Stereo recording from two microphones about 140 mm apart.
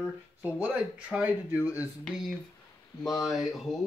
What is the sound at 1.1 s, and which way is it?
Speech, 10° right (ahead or behind).